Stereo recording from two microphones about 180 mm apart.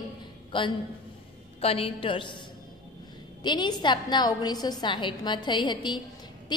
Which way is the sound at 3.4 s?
25° left (ahead or behind).